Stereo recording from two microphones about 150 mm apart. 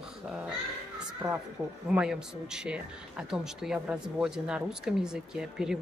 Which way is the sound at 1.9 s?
5° right (ahead or behind).